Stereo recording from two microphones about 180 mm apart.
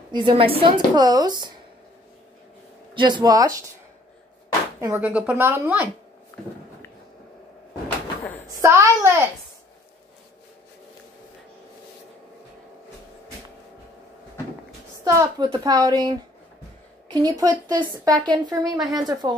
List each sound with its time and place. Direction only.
0.1 s a woman's voice: 25° right (ahead or behind)
2.9 s a woman's voice: 25° right (ahead or behind)
4.7 s speech: 15° right (ahead or behind)
8.2 s a sound: 10° left (ahead or behind)
8.5 s speech: 15° right (ahead or behind)
15.0 s a woman's voice: 20° right (ahead or behind)